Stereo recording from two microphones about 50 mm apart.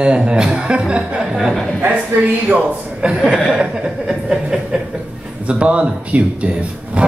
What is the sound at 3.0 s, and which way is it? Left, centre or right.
Speech, centre.